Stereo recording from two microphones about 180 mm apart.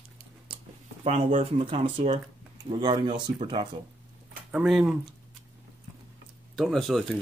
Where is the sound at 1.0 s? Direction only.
40° right (ahead or behind).